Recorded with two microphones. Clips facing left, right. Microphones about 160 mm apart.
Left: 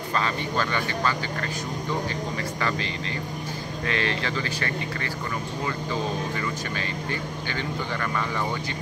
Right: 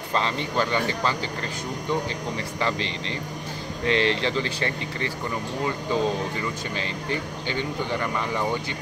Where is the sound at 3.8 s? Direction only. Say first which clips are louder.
Right 5 dB; 25° right (ahead or behind).